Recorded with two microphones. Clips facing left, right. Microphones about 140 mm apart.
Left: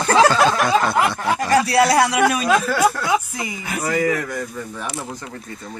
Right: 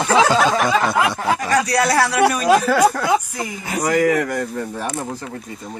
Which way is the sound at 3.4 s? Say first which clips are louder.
Right 1 dB; 35° right (ahead or behind).